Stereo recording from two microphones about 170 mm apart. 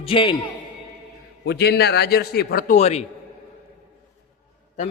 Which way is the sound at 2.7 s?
40° left (ahead or behind).